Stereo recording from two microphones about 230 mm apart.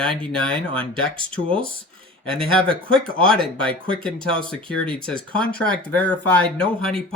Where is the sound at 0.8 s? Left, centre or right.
Right.